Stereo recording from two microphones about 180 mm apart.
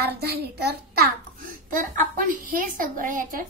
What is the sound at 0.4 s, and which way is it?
Speech, 65° right (ahead or behind).